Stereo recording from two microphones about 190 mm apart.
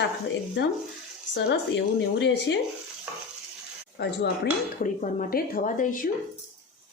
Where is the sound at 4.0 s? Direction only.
60° left (ahead or behind).